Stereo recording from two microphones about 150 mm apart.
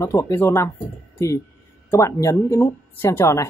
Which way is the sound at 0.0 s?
20° left (ahead or behind).